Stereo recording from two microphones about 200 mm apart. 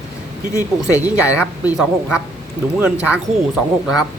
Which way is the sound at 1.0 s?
5° right (ahead or behind).